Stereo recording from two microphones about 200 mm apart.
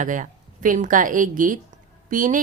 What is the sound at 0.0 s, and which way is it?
A woman's voice, 40° right (ahead or behind).